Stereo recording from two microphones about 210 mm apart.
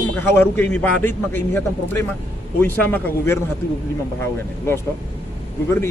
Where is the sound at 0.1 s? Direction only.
10° left (ahead or behind).